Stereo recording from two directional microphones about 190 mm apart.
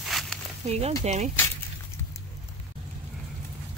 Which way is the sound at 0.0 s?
Centre (ahead or behind).